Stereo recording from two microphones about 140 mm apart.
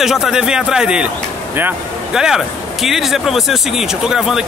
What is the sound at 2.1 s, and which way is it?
Speech, 5° right (ahead or behind).